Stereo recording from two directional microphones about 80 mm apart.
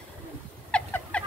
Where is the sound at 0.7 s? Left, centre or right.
Centre.